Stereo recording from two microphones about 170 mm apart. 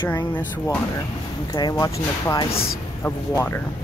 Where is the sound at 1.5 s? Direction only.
25° left (ahead or behind).